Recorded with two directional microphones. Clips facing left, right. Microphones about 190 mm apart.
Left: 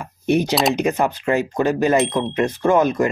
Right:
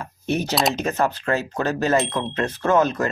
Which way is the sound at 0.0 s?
15° left (ahead or behind).